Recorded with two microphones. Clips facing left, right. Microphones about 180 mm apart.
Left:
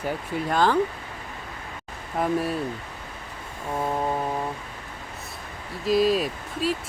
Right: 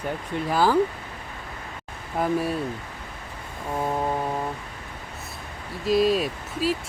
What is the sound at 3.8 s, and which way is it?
Speech, centre (ahead or behind).